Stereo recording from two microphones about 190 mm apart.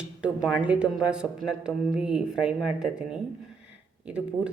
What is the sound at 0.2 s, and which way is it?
A woman's voice, 5° right (ahead or behind).